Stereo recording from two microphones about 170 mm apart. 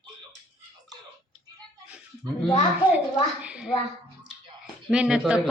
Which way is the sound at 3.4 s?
5° right (ahead or behind).